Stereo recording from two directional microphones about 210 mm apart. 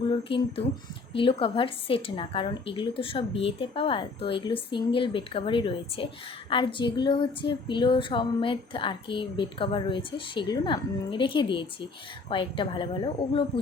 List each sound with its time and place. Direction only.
0.1 s speech: 25° left (ahead or behind)